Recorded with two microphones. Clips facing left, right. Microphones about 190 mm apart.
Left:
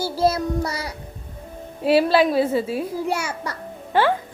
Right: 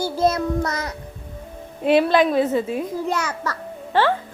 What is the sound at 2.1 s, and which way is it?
Speech, 30° left (ahead or behind).